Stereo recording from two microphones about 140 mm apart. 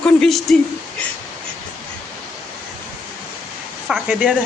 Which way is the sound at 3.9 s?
5° right (ahead or behind).